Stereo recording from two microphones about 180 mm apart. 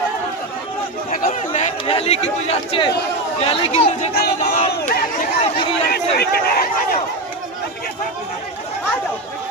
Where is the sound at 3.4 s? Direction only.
35° left (ahead or behind).